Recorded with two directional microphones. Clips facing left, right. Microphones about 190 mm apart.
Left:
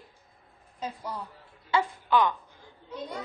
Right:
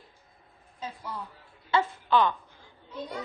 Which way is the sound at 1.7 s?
10° left (ahead or behind).